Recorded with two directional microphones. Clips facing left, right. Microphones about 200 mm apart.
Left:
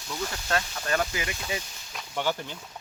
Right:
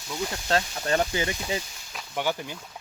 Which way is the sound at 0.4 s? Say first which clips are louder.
Right 4 dB; 30° right (ahead or behind).